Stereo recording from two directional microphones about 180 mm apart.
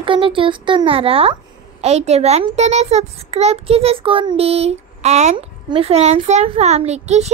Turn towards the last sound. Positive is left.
turn(degrees=-40)  # may be behind; listen again after turning